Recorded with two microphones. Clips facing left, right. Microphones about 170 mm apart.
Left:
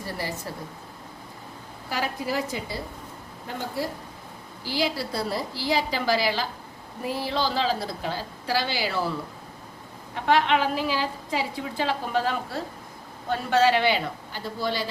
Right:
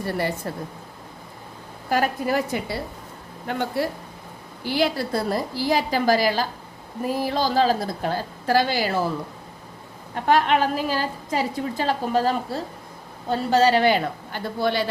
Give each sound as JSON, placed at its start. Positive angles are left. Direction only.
{"t": 0.0, "sound": "a woman's voice", "side_deg": -60}
{"t": 1.9, "sound": "a woman's voice", "side_deg": -55}
{"t": 4.6, "sound": "a woman's voice", "side_deg": -55}
{"t": 10.2, "sound": "a woman's voice", "side_deg": -45}